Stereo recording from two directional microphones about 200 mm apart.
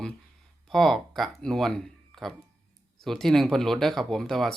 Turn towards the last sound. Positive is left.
turn(degrees=0)  # may be behind; listen again after turning